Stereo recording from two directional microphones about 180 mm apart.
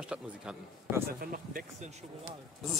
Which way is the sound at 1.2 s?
50° right (ahead or behind).